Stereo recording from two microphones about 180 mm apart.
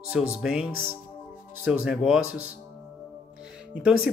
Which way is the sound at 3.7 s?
5° right (ahead or behind).